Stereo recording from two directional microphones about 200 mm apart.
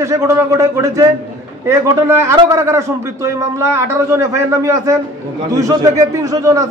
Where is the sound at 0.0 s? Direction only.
15° right (ahead or behind).